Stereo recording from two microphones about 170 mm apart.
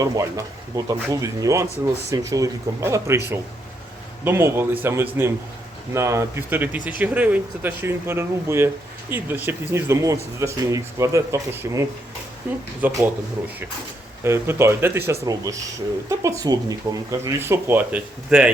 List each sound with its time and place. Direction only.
0.0 s speech: 20° right (ahead or behind)
14.3 s speech: 15° right (ahead or behind)